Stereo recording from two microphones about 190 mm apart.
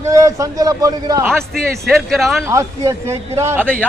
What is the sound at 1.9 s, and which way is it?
Speech, centre (ahead or behind).